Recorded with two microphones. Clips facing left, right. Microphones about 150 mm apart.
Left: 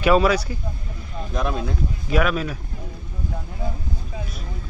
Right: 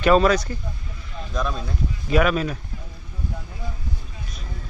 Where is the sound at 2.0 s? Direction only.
Centre (ahead or behind).